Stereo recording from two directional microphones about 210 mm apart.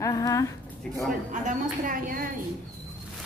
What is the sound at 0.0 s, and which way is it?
Speech, 15° left (ahead or behind).